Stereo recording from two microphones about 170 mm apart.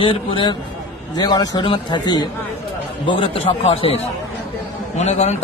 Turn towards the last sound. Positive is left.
turn(degrees=40)  # may be behind; listen again after turning